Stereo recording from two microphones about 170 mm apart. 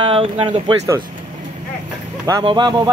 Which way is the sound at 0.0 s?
30° right (ahead or behind).